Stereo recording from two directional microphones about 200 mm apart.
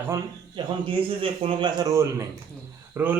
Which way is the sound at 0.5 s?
25° right (ahead or behind).